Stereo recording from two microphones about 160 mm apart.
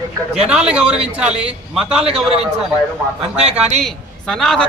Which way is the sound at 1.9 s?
40° right (ahead or behind).